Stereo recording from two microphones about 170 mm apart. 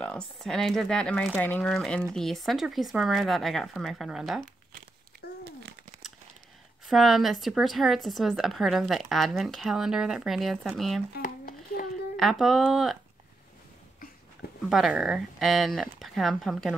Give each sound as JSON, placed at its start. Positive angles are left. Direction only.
{"t": 0.0, "sound": "speech", "side_deg": 5}
{"t": 6.9, "sound": "speech", "side_deg": 0}
{"t": 11.1, "sound": "a sound", "side_deg": 55}
{"t": 12.2, "sound": "speech", "side_deg": 0}
{"t": 14.7, "sound": "speech", "side_deg": 0}